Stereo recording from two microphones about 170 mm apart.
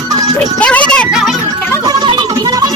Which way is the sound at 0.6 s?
5° left (ahead or behind).